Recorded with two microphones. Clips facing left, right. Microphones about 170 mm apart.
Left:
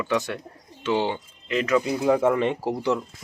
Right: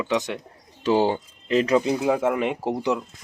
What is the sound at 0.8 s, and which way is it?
Speech, 40° right (ahead or behind).